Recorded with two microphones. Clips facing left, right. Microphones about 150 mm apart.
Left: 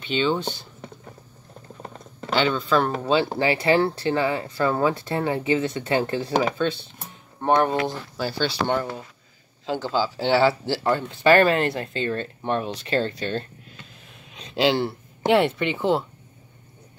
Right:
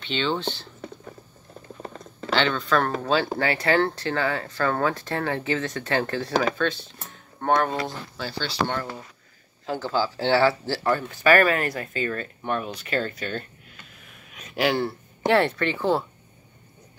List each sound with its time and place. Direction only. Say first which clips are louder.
0.0 s speech: left 3 dB; 10° left (ahead or behind)
2.3 s speech: left 2 dB; 10° left (ahead or behind); by 7.7 s 25° left (ahead or behind)
7.8 s speech: left 5 dB; 10° left (ahead or behind)